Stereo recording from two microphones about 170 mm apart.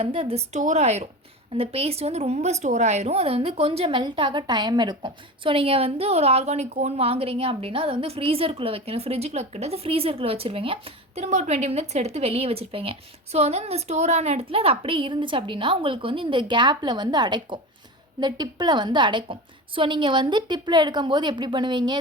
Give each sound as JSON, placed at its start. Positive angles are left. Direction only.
{"t": 0.0, "sound": "a woman's voice", "side_deg": -35}